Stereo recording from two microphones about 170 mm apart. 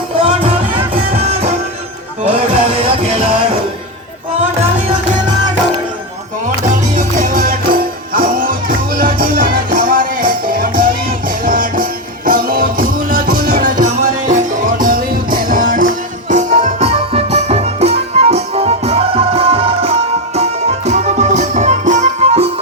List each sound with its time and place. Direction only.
0.2 s music: 35° right (ahead or behind)
6.9 s music: 55° right (ahead or behind); by 22.5 s 40° right (ahead or behind)